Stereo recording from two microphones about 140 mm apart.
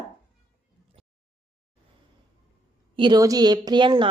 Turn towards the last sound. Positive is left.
turn(degrees=-35)  # may be behind; listen again after turning